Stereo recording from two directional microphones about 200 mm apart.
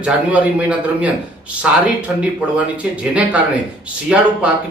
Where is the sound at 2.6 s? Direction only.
5° right (ahead or behind).